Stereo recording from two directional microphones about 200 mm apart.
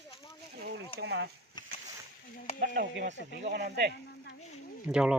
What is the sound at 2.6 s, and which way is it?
Speech, 40° right (ahead or behind).